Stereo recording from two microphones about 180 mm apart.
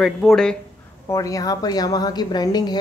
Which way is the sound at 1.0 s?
20° left (ahead or behind).